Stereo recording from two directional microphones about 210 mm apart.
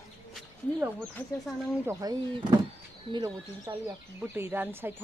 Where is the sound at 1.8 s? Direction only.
20° right (ahead or behind).